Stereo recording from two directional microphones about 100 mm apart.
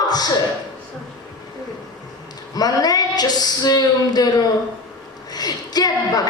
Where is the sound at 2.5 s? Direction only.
40° left (ahead or behind).